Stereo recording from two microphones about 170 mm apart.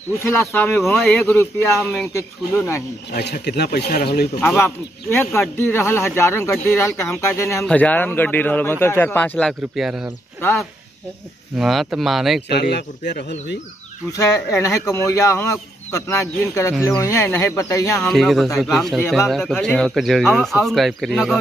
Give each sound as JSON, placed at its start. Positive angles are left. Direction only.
{"t": 0.2, "sound": "speech", "side_deg": 15}
{"t": 3.1, "sound": "speech", "side_deg": 75}
{"t": 4.4, "sound": "speech", "side_deg": 15}
{"t": 11.5, "sound": "speech", "side_deg": 0}
{"t": 12.4, "sound": "speech", "side_deg": 80}
{"t": 14.1, "sound": "speech", "side_deg": 20}
{"t": 18.0, "sound": "speech", "side_deg": 0}